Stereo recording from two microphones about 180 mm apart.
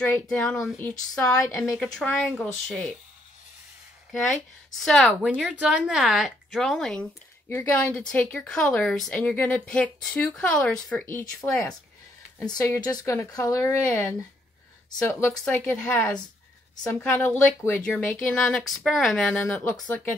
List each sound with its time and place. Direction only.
0.0 s a woman's voice: 10° left (ahead or behind)
4.1 s a woman's voice: centre (ahead or behind)